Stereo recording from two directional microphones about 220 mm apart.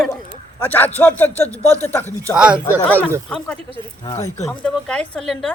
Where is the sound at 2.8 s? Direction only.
5° left (ahead or behind).